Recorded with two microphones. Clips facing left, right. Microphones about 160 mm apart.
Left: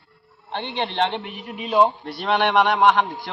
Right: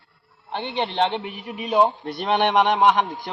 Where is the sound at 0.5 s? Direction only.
5° right (ahead or behind).